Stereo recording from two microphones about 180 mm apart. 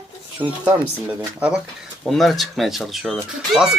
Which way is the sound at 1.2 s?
5° right (ahead or behind).